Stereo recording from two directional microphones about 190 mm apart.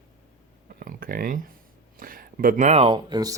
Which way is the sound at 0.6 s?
50° right (ahead or behind).